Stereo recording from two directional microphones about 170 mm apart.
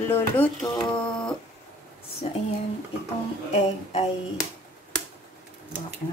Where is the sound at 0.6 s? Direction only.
25° left (ahead or behind).